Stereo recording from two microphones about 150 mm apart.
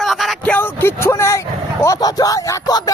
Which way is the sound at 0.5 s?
15° left (ahead or behind).